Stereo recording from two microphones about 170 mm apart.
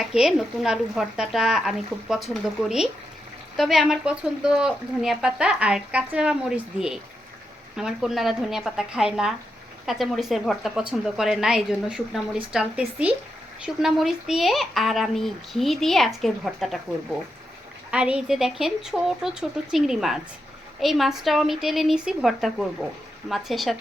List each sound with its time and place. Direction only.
0.0 s a woman's voice: 5° right (ahead or behind)
13.8 s a woman's voice: centre (ahead or behind)
17.9 s a woman's voice: 5° right (ahead or behind)